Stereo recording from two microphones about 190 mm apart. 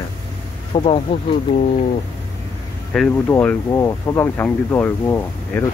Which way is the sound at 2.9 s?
5° left (ahead or behind).